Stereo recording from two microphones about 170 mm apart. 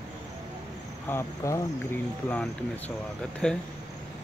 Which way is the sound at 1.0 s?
15° left (ahead or behind).